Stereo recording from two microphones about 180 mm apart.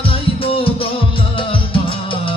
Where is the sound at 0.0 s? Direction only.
30° left (ahead or behind).